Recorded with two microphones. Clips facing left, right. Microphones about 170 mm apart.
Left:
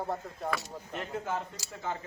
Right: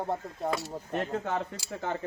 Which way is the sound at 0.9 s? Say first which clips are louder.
Right 4 dB; 65° right (ahead or behind).